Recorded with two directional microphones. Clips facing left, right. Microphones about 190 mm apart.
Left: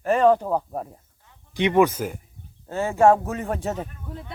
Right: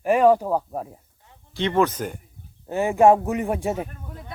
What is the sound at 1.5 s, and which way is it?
Speech, 15° left (ahead or behind).